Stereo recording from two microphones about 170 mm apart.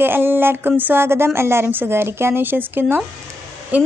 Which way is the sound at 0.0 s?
10° right (ahead or behind).